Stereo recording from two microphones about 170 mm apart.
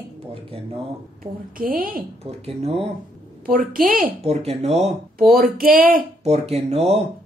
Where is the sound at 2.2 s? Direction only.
35° right (ahead or behind).